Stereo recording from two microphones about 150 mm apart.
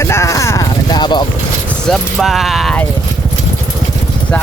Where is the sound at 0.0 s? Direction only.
20° left (ahead or behind).